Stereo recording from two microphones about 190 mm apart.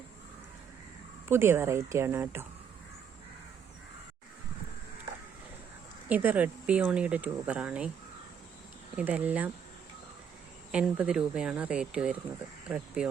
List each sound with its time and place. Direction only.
1.3 s speech: 15° right (ahead or behind)
6.1 s speech: 10° right (ahead or behind)
9.0 s speech: 10° right (ahead or behind)
10.7 s speech: 5° right (ahead or behind)